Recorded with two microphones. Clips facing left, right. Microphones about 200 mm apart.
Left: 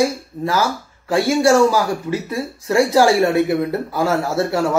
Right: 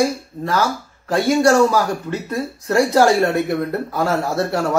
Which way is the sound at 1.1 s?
5° left (ahead or behind).